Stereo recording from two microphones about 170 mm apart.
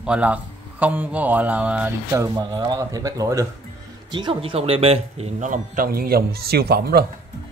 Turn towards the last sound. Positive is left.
turn(degrees=-65)  # may be behind; listen again after turning